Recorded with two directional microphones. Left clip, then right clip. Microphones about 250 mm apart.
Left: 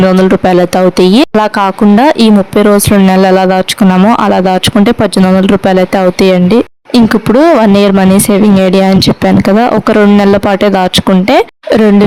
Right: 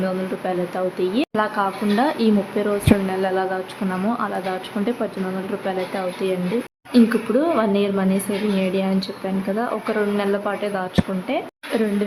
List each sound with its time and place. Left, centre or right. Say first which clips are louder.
0.9 s speech: left 15 dB; left
6.9 s speech: left 11 dB; left
9.6 s speech: left 14 dB; left